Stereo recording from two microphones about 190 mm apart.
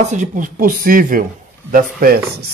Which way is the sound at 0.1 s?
40° right (ahead or behind).